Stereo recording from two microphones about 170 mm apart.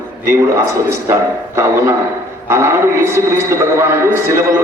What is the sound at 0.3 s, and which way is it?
A man's voice, 15° right (ahead or behind).